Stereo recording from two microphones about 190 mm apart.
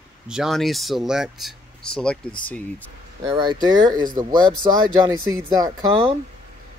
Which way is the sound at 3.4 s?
20° right (ahead or behind).